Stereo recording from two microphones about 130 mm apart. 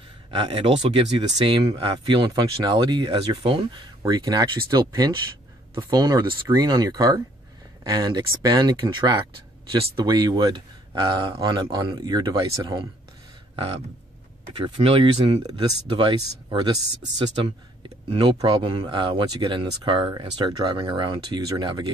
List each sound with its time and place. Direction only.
0.3 s speech: 45° right (ahead or behind)
14.6 s speech: 45° right (ahead or behind)